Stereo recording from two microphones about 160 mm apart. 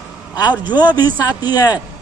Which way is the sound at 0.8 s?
25° left (ahead or behind).